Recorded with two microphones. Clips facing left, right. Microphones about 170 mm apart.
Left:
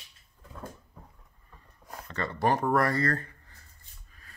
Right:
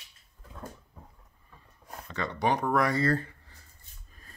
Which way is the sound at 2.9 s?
25° right (ahead or behind).